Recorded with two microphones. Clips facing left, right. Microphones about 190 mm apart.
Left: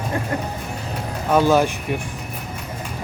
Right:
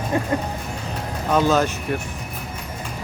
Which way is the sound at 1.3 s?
10° left (ahead or behind).